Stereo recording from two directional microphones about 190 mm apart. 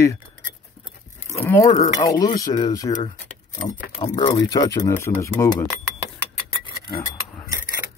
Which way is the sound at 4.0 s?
20° left (ahead or behind).